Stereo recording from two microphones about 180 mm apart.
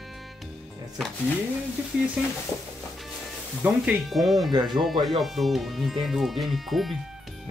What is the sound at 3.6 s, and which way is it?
Speech, 5° right (ahead or behind).